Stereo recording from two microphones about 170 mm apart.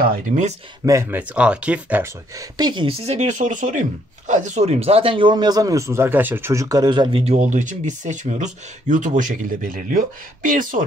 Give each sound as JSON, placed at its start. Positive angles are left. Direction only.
{"t": 0.0, "sound": "speech", "side_deg": -50}
{"t": 0.8, "sound": "speech", "side_deg": -15}
{"t": 2.5, "sound": "speech", "side_deg": -25}